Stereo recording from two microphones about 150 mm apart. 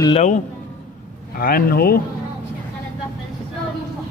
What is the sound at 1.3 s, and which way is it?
Speech, 75° left (ahead or behind).